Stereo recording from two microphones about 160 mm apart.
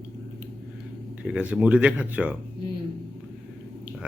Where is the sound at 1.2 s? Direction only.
5° right (ahead or behind).